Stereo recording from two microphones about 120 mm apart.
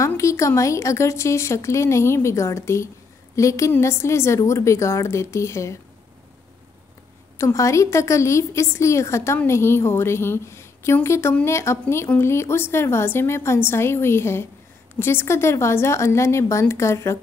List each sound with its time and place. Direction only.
0.2 s speech: 25° left (ahead or behind)
7.3 s speech: 25° left (ahead or behind)